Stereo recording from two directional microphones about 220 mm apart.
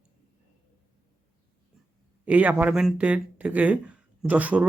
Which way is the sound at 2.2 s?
5° right (ahead or behind).